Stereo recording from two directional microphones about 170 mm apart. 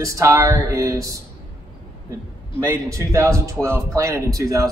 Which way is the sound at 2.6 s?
15° right (ahead or behind).